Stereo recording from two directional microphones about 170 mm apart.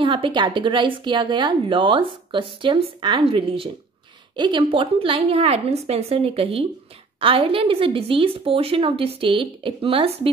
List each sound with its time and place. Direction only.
0.0 s a woman's voice: 30° right (ahead or behind)